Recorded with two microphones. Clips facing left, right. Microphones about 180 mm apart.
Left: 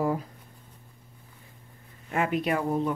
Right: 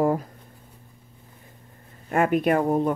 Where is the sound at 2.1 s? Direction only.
50° right (ahead or behind).